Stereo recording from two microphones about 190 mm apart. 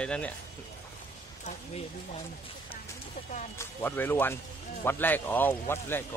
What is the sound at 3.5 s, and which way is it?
Speech, 10° left (ahead or behind).